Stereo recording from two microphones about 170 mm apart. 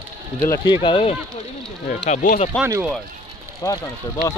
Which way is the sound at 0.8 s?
30° left (ahead or behind).